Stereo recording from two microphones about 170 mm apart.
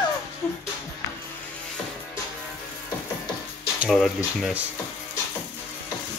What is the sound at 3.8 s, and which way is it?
Speech, centre (ahead or behind).